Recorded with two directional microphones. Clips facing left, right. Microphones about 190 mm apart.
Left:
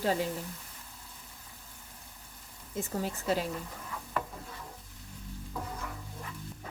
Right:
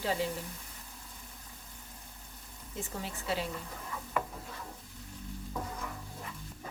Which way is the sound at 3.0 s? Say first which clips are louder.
Left 4 dB; 45° left (ahead or behind).